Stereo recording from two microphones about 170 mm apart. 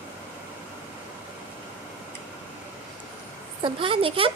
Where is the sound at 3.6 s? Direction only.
30° right (ahead or behind).